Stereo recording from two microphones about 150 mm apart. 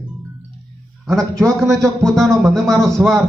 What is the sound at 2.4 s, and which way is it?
Speech, centre (ahead or behind).